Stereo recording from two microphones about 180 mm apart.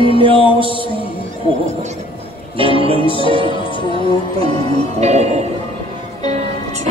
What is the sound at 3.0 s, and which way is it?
Music, 30° left (ahead or behind).